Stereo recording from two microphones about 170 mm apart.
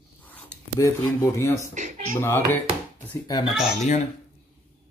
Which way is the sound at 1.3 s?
15° left (ahead or behind).